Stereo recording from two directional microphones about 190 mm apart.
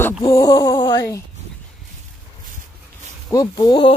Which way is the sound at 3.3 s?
20° left (ahead or behind).